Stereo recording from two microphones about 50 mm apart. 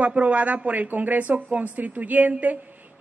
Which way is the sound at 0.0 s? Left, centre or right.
Right.